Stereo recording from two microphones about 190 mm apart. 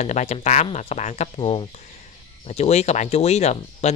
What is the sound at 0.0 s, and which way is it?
Chicken, 35° left (ahead or behind).